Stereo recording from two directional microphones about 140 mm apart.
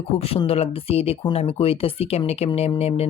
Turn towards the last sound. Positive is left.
turn(degrees=45)  # may be behind; listen again after turning